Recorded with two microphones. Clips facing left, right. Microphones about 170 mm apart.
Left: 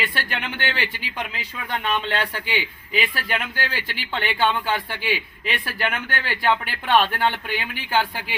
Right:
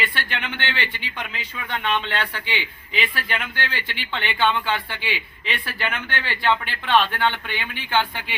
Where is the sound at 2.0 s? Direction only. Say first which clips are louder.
Left 2 dB; 40° left (ahead or behind).